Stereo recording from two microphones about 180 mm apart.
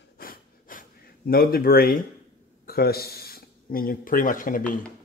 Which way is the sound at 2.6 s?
55° left (ahead or behind).